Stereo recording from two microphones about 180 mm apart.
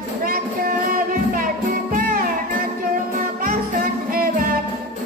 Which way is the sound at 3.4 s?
55° right (ahead or behind).